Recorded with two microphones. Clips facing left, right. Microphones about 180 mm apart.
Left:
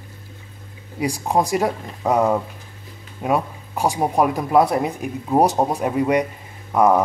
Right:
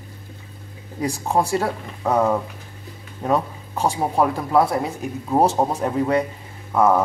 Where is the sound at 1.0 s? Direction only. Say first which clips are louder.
Left 1 dB; 10° left (ahead or behind).